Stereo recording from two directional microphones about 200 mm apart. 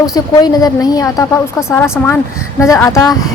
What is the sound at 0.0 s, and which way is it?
A woman's voice, 20° left (ahead or behind).